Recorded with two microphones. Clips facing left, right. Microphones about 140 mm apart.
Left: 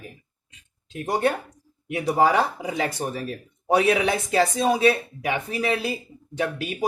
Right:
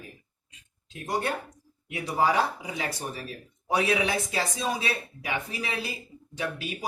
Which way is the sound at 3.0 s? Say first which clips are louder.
Left 7 dB; 60° left (ahead or behind).